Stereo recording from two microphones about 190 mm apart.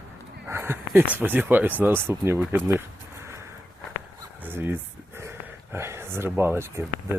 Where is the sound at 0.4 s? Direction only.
15° right (ahead or behind).